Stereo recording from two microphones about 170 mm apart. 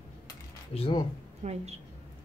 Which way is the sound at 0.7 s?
35° left (ahead or behind).